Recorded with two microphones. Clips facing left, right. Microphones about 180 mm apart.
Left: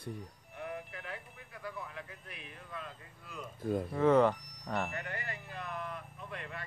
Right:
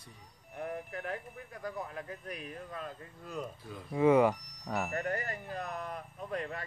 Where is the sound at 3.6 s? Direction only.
50° left (ahead or behind).